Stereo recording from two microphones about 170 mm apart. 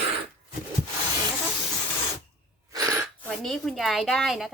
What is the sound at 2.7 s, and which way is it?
Gasp, 20° right (ahead or behind).